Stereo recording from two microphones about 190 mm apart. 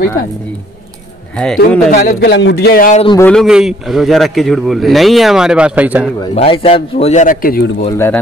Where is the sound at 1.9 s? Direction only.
60° left (ahead or behind).